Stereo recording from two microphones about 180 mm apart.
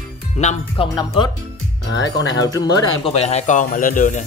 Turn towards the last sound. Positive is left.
turn(degrees=45)  # may be behind; listen again after turning